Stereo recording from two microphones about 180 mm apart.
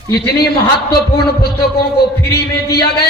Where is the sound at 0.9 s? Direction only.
60° left (ahead or behind).